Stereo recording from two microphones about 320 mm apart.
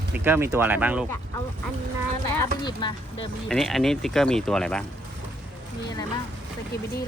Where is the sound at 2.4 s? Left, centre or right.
Centre.